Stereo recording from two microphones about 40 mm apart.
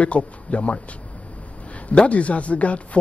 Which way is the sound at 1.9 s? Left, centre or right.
Left.